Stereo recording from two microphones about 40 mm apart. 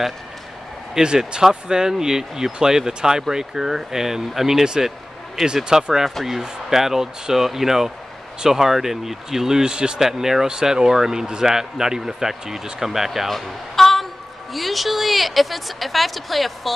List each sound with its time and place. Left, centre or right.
0.9 s speech: centre
10.0 s speech: centre
13.3 s a sound: centre
14.5 s a woman's voice: centre